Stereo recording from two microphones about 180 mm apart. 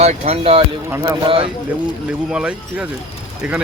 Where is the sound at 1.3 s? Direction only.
30° right (ahead or behind).